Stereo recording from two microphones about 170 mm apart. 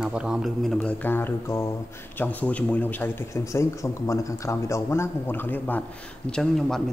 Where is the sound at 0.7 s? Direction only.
10° left (ahead or behind).